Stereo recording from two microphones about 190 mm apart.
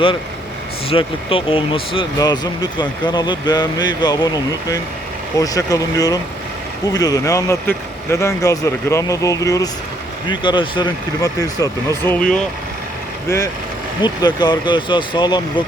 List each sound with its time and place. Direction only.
0.9 s speech: 30° left (ahead or behind)
5.4 s speech: 20° left (ahead or behind)
13.2 s speech: 15° left (ahead or behind)